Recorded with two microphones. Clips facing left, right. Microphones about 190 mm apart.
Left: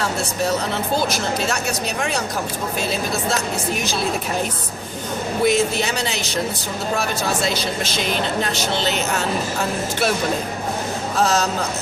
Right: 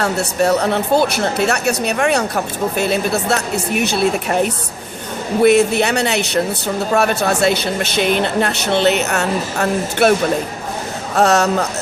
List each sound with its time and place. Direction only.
0.0 s a woman's voice: 65° right (ahead or behind)
5.4 s a woman's voice: 60° right (ahead or behind)
11.2 s speech: 70° right (ahead or behind)